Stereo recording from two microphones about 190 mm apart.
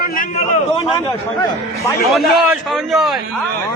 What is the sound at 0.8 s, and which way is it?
Speech, 30° left (ahead or behind).